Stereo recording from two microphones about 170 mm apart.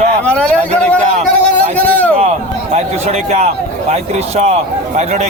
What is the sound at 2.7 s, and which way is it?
A man's voice, 40° right (ahead or behind).